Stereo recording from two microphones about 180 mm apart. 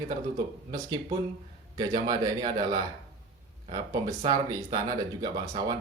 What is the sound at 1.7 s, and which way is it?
Speech, 25° right (ahead or behind).